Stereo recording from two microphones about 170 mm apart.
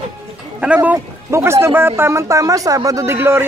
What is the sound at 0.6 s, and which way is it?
A man's voice, 10° right (ahead or behind).